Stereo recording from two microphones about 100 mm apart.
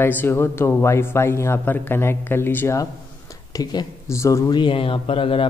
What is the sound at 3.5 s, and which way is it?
Speech, 40° left (ahead or behind).